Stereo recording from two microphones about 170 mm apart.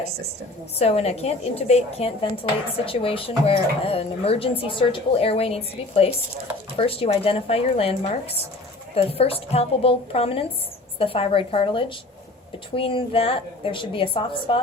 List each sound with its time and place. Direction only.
0.8 s speech: 35° left (ahead or behind)